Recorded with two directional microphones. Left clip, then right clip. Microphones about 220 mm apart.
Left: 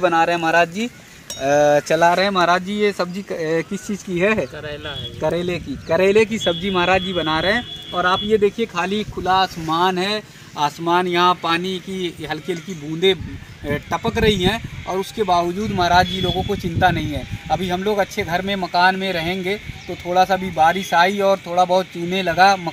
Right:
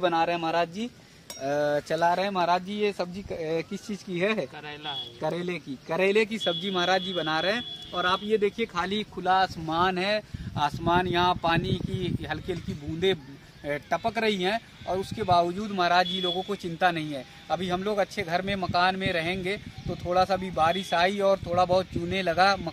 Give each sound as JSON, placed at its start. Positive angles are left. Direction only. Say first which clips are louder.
{"t": 0.0, "sound": "speech", "louder": "left 8 dB", "side_deg": 5}
{"t": 1.4, "sound": "speech", "louder": "left 11 dB", "side_deg": 25}
{"t": 4.2, "sound": "speech", "louder": "left 9 dB", "side_deg": 20}